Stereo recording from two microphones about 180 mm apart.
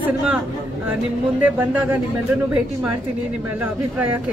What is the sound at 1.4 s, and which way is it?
Speech, 10° right (ahead or behind).